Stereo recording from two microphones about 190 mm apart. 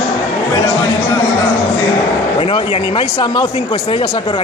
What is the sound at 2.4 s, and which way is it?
Speech, 30° left (ahead or behind).